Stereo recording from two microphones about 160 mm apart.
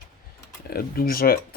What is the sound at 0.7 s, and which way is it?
Speech, 70° left (ahead or behind).